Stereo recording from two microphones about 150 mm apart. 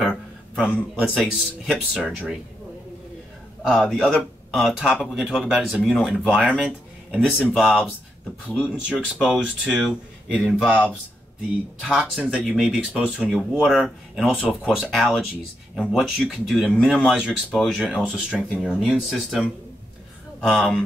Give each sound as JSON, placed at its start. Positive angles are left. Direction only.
{"t": 0.0, "sound": "a sound", "side_deg": -5}
{"t": 1.1, "sound": "speech", "side_deg": 0}
{"t": 3.6, "sound": "speech", "side_deg": -5}
{"t": 11.8, "sound": "speech", "side_deg": -5}
{"t": 20.4, "sound": "speech", "side_deg": 0}